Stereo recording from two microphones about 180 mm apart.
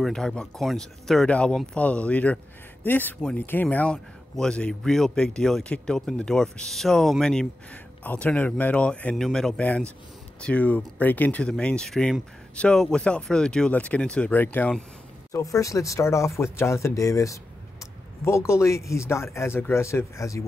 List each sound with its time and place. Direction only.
0.0 s speech: 5° left (ahead or behind)